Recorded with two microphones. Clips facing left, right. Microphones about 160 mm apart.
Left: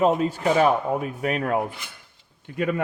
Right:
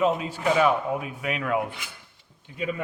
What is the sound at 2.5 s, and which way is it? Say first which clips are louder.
Speech: left 5 dB; 60° left (ahead or behind).